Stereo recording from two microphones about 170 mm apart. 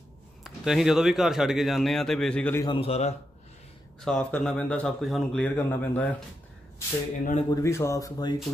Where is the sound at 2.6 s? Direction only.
30° left (ahead or behind).